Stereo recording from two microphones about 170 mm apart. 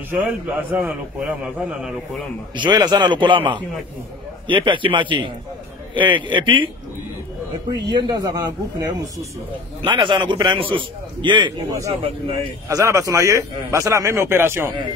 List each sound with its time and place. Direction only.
0.1 s a man's voice: 10° right (ahead or behind)
2.5 s a man's voice: 25° right (ahead or behind)
7.9 s a man's voice: 25° right (ahead or behind)
12.6 s a man's voice: 20° right (ahead or behind)